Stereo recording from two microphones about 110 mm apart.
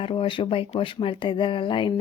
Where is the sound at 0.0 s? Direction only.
50° left (ahead or behind).